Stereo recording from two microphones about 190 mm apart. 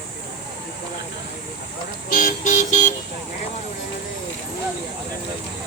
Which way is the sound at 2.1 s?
45° left (ahead or behind).